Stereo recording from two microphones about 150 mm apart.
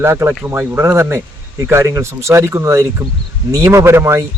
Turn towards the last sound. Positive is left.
turn(degrees=-20)  # may be behind; listen again after turning